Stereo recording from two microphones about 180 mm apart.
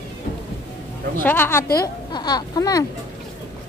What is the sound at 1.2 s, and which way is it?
Speech, 10° left (ahead or behind).